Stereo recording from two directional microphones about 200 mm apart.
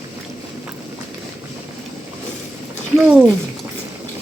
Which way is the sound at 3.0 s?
10° right (ahead or behind).